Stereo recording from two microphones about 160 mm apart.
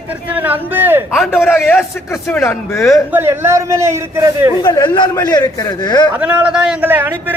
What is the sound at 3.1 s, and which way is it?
A man's voice, 15° right (ahead or behind).